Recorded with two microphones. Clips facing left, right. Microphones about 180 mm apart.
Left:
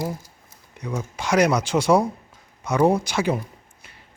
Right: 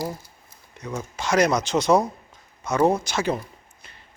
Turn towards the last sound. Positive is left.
turn(degrees=10)  # may be behind; listen again after turning